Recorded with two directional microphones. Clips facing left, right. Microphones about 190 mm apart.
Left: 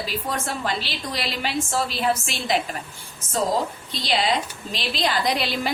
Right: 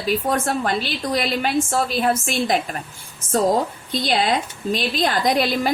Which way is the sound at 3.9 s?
50° right (ahead or behind).